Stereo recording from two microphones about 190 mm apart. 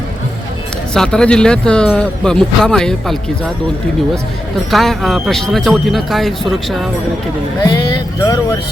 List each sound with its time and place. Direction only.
0.9 s speech: 5° left (ahead or behind)
4.7 s speech: centre (ahead or behind)
7.6 s speech: 25° left (ahead or behind)